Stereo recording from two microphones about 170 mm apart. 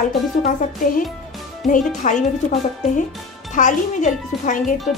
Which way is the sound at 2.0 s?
45° left (ahead or behind).